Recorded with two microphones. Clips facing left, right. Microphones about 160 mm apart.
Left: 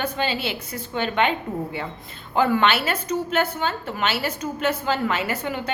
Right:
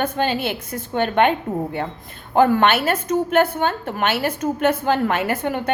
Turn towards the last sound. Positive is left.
turn(degrees=-55)  # may be behind; listen again after turning